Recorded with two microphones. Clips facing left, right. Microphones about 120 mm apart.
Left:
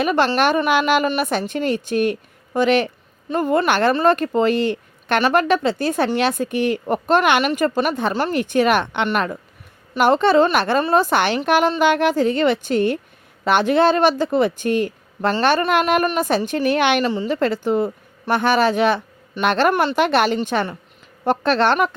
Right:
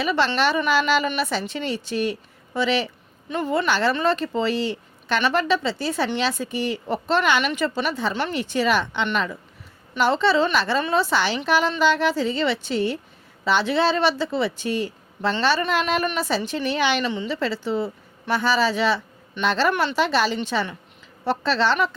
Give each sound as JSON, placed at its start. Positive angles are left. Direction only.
{"t": 0.0, "sound": "a woman's voice", "side_deg": 50}
{"t": 17.0, "sound": "a woman's voice", "side_deg": 40}
{"t": 19.7, "sound": "a woman's voice", "side_deg": 45}